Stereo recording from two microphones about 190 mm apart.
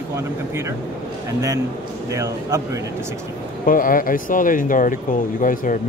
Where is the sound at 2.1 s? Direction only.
15° right (ahead or behind).